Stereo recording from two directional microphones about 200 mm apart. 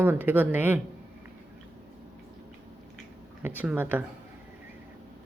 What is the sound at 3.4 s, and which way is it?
Speech, 10° right (ahead or behind).